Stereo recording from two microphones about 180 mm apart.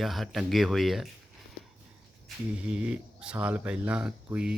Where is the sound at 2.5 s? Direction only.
5° right (ahead or behind).